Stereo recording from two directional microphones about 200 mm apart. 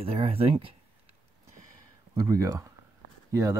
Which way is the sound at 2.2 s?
15° right (ahead or behind).